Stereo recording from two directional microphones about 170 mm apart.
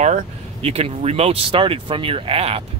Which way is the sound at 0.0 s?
40° right (ahead or behind).